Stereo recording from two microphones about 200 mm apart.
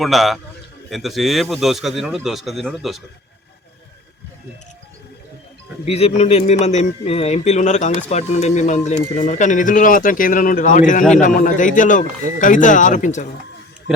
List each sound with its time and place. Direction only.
0.0 s a man's voice: centre (ahead or behind)
5.8 s speech: 30° left (ahead or behind)